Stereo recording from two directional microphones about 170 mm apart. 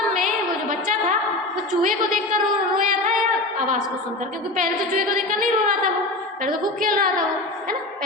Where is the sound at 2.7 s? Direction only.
50° right (ahead or behind).